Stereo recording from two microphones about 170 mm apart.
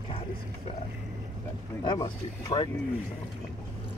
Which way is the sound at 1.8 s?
20° left (ahead or behind).